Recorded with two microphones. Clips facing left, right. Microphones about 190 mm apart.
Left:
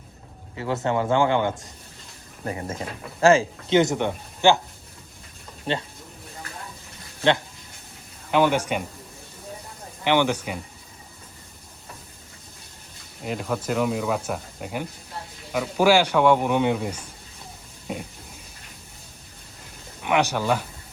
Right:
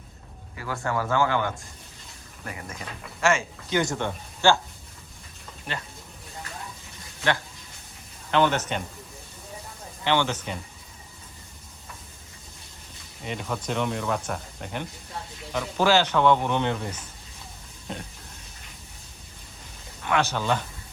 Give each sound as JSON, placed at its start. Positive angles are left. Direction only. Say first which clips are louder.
{"t": 0.5, "sound": "speech", "louder": "left 5 dB", "side_deg": 25}
{"t": 3.8, "sound": "a man's voice", "louder": "left 6 dB", "side_deg": 20}
{"t": 5.7, "sound": "speech", "louder": "left 8 dB", "side_deg": 30}
{"t": 8.3, "sound": "a man's voice", "louder": "left 2 dB", "side_deg": 10}
{"t": 10.0, "sound": "a man's voice", "louder": "left 4 dB", "side_deg": 15}
{"t": 13.2, "sound": "a man's voice", "louder": "left 4 dB", "side_deg": 5}
{"t": 20.0, "sound": "a man's voice", "louder": "left 3 dB", "side_deg": 15}